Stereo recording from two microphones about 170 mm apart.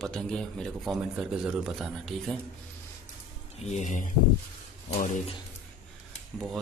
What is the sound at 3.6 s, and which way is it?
Speech, 45° left (ahead or behind).